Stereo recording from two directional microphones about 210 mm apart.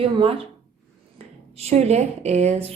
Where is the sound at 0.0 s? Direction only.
25° right (ahead or behind).